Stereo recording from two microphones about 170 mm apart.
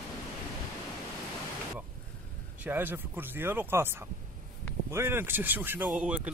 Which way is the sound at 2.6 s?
10° right (ahead or behind).